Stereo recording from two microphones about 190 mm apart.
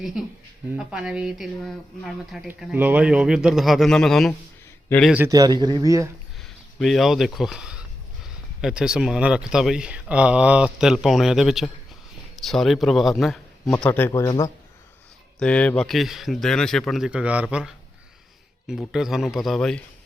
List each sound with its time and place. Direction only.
0.0 s speech: centre (ahead or behind)
5.1 s speech: 15° right (ahead or behind)
6.4 s speech: centre (ahead or behind); by 14.5 s 20° left (ahead or behind)
15.4 s speech: 5° left (ahead or behind)